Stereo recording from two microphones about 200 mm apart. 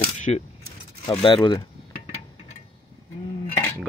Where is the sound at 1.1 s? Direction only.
25° left (ahead or behind).